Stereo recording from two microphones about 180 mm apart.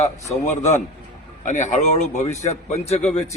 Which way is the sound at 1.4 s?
45° left (ahead or behind).